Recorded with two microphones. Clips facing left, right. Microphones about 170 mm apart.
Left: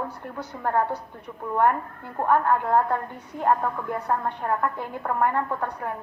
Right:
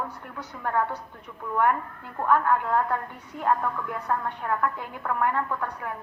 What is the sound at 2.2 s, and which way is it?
A woman's voice, 25° left (ahead or behind).